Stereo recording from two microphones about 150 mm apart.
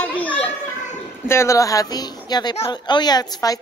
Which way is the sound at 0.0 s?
10° left (ahead or behind).